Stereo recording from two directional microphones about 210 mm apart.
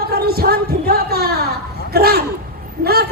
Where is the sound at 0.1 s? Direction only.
45° right (ahead or behind).